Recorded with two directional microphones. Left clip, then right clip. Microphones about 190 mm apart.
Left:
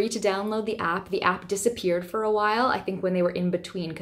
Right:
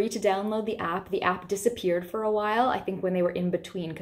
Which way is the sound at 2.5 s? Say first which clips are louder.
Left 1 dB; 35° left (ahead or behind).